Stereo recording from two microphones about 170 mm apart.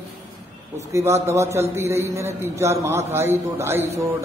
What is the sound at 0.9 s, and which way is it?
A man's voice, 15° right (ahead or behind).